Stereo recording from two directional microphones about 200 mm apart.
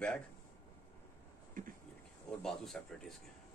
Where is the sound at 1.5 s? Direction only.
40° right (ahead or behind).